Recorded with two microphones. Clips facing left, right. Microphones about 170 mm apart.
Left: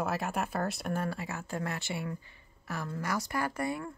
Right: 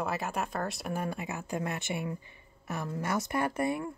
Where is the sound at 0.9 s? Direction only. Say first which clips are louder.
Even; 15° right (ahead or behind).